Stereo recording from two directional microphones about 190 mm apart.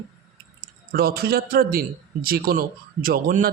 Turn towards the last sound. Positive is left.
turn(degrees=-45)  # may be behind; listen again after turning